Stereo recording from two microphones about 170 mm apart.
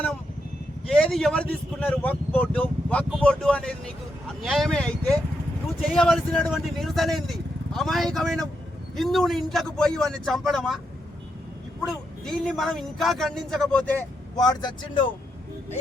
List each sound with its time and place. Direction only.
0.9 s speech: 5° left (ahead or behind)
5.9 s speech: 5° left (ahead or behind)
12.2 s speech: centre (ahead or behind)
14.3 s speech: 25° left (ahead or behind)